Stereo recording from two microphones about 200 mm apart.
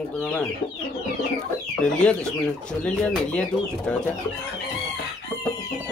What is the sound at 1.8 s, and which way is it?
Chicken, 5° left (ahead or behind).